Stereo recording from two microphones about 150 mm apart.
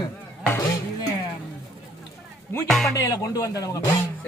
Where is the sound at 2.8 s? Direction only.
20° left (ahead or behind).